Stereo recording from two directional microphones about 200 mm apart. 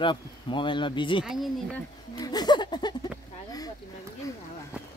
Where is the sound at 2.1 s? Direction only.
20° left (ahead or behind).